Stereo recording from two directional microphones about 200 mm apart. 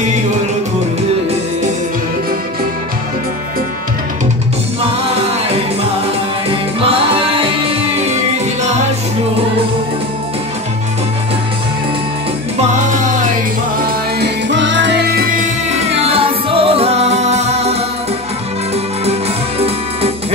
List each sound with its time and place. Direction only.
14.2 s music: 65° right (ahead or behind)
15.7 s music: 30° right (ahead or behind)
19.6 s music: 30° right (ahead or behind)